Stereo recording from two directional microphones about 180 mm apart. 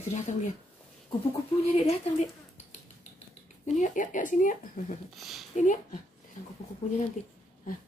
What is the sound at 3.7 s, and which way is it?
Speech, 45° left (ahead or behind).